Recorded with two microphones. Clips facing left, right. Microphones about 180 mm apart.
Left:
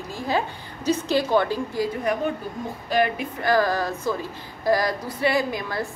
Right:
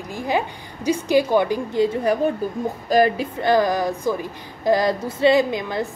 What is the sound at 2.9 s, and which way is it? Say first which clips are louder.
Speech: right 5 dB; 35° right (ahead or behind).